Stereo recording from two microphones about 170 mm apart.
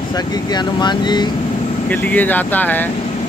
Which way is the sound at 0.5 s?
25° left (ahead or behind).